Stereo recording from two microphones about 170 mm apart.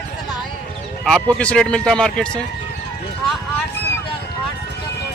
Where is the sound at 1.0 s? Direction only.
5° left (ahead or behind).